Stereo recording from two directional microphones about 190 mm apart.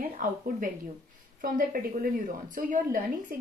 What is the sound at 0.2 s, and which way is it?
Speech, 45° right (ahead or behind).